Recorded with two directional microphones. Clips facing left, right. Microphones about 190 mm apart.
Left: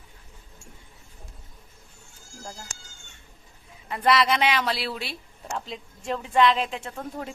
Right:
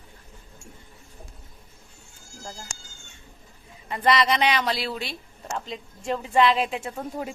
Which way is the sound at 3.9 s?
Centre (ahead or behind).